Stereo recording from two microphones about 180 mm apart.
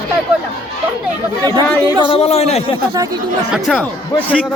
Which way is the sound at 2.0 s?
35° left (ahead or behind).